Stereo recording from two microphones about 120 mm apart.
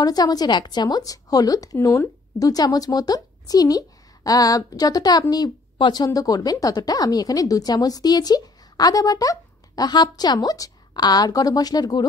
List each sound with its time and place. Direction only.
0.0 s a woman's voice: 30° left (ahead or behind)